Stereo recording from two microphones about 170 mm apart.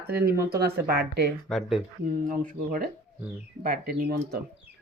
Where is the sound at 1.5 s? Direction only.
Centre (ahead or behind).